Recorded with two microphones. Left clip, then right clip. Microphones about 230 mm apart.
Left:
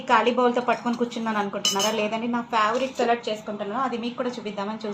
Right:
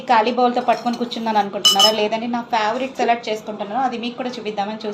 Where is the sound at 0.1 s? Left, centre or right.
Left.